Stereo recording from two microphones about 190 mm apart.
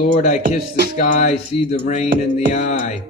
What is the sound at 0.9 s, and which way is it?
Speech, 40° left (ahead or behind).